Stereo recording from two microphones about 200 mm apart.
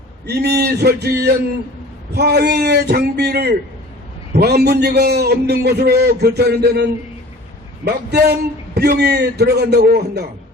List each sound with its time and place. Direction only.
0.3 s a man's voice: 55° right (ahead or behind)
7.9 s a man's voice: 55° right (ahead or behind)